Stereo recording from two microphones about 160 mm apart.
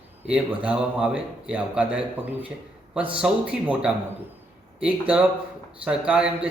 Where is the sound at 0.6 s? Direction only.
5° right (ahead or behind).